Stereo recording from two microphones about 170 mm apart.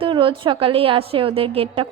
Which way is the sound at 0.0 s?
30° right (ahead or behind).